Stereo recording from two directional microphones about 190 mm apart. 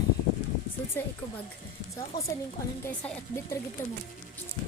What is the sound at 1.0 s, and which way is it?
Speech, 10° left (ahead or behind).